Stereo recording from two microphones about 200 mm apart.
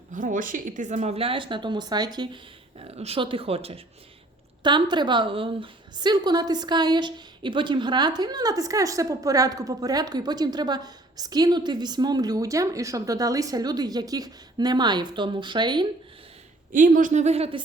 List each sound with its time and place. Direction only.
0.1 s a woman's voice: 40° right (ahead or behind); by 15.9 s 20° right (ahead or behind)
16.7 s speech: 40° right (ahead or behind)